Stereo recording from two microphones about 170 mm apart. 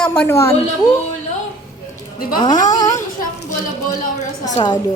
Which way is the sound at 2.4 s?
25° left (ahead or behind).